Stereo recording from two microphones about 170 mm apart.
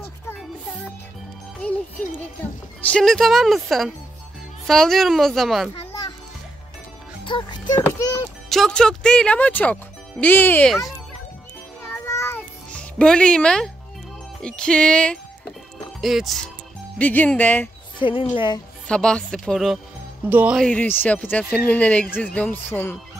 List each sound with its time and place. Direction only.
1.6 s music: 10° left (ahead or behind)
2.9 s speech: 5° left (ahead or behind)
7.2 s music: 30° left (ahead or behind)
8.5 s speech: centre (ahead or behind)
11.8 s music: 15° left (ahead or behind)
14.4 s speech: 5° left (ahead or behind)
17.0 s speech: 10° left (ahead or behind)
17.9 s speech: 30° left (ahead or behind)
18.9 s speech: 5° left (ahead or behind)
20.6 s speech: 10° left (ahead or behind)